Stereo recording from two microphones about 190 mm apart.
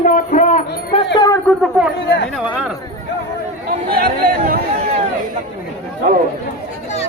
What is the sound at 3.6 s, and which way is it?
Chatter, 50° right (ahead or behind).